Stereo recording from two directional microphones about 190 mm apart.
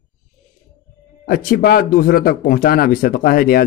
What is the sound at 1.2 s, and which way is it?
Speech, 50° left (ahead or behind).